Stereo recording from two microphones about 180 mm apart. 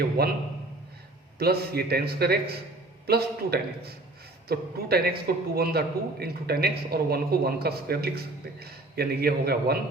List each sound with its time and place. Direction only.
0.2 s a man's voice: 60° right (ahead or behind)
1.4 s a man's voice: 60° right (ahead or behind)